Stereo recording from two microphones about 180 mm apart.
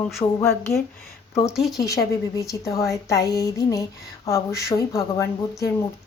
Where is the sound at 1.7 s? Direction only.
20° left (ahead or behind).